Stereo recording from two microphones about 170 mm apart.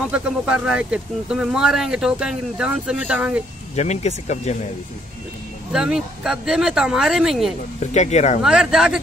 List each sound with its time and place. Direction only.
0.1 s speech: 5° right (ahead or behind)
3.7 s speech: 40° left (ahead or behind)
5.7 s speech: 5° right (ahead or behind)
7.8 s speech: 40° left (ahead or behind)
8.4 s speech: 5° right (ahead or behind)